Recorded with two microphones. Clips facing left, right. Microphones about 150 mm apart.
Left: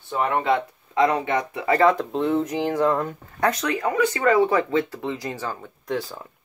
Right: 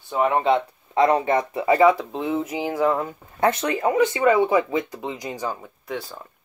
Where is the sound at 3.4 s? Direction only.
25° right (ahead or behind).